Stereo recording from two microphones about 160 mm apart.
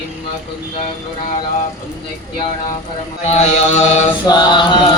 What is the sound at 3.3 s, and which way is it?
Chant, 45° left (ahead or behind).